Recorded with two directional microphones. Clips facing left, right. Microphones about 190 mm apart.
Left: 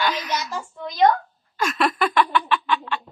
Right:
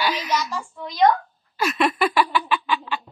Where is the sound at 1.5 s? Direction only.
5° right (ahead or behind).